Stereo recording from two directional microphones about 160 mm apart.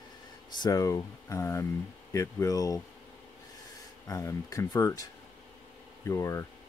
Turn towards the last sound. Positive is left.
turn(degrees=20)  # may be behind; listen again after turning